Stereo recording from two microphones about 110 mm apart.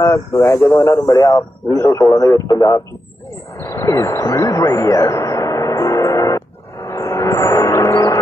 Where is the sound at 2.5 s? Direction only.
35° left (ahead or behind).